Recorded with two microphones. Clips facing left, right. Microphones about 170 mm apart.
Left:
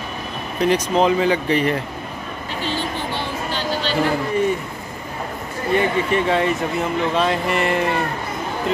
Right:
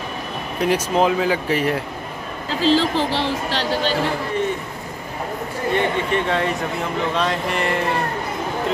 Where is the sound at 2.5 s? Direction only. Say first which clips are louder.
Right 8 dB; 90° right.